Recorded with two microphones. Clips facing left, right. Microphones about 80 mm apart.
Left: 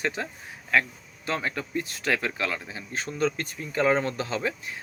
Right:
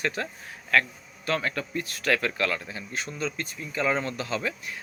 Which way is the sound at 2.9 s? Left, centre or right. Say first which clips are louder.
Left 5 dB; left.